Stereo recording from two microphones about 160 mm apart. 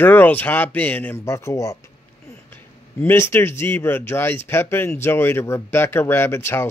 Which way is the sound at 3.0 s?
15° left (ahead or behind).